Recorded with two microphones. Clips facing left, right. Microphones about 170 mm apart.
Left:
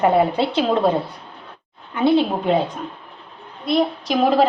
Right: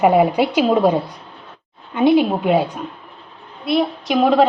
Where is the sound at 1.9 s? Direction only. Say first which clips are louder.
Right 3 dB; 15° right (ahead or behind); by 4.4 s centre (ahead or behind).